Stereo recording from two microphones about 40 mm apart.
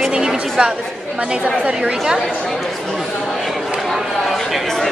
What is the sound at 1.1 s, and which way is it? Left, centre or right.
Speech, right.